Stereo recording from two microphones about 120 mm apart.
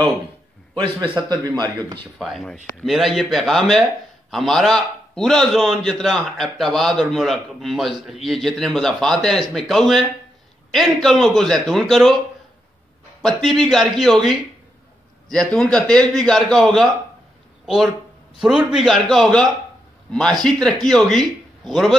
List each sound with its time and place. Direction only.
1.0 s a man's voice: 40° right (ahead or behind)
2.1 s a man's voice: centre (ahead or behind)
13.2 s a man's voice: centre (ahead or behind)
18.4 s a man's voice: 5° right (ahead or behind)